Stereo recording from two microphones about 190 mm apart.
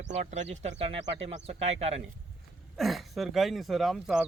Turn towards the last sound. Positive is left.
turn(degrees=0)  # may be behind; listen again after turning